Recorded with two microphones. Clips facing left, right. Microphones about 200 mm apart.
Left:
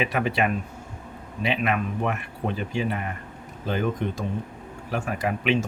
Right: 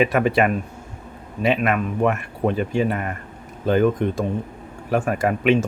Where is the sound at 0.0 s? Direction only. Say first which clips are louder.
Right 6 dB; 50° right (ahead or behind).